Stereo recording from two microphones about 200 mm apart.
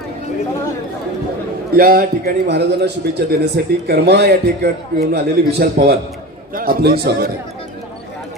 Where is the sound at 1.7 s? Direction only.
45° right (ahead or behind).